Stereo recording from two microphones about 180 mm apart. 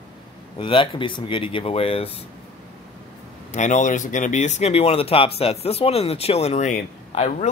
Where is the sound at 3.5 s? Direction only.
40° left (ahead or behind).